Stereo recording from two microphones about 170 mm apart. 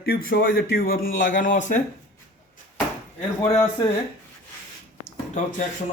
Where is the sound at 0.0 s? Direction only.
65° left (ahead or behind); by 1.8 s 50° left (ahead or behind).